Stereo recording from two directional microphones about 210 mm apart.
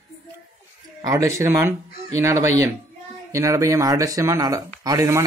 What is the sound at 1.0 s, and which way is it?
Speech, 15° right (ahead or behind).